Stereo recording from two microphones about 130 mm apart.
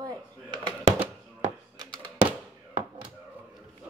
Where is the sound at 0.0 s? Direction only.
35° right (ahead or behind).